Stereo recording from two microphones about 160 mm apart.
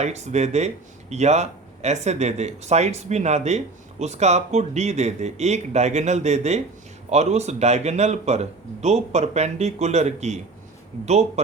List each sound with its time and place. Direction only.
0.0 s speech: 45° right (ahead or behind)